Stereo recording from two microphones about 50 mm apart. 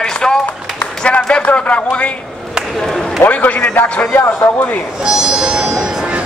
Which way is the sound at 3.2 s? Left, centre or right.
Left.